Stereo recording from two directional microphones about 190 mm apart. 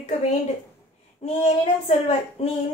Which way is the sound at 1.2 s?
35° left (ahead or behind).